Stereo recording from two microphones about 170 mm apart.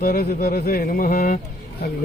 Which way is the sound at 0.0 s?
60° left (ahead or behind).